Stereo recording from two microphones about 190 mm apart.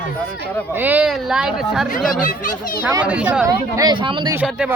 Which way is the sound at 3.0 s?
5° right (ahead or behind).